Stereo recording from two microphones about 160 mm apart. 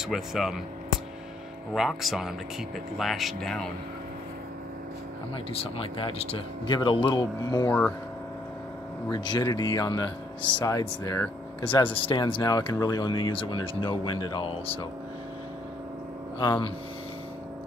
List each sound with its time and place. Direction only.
0.0 s speech: centre (ahead or behind)
1.7 s speech: centre (ahead or behind)
5.5 s speech: 35° left (ahead or behind)
9.1 s speech: 25° left (ahead or behind)
16.3 s speech: 30° left (ahead or behind)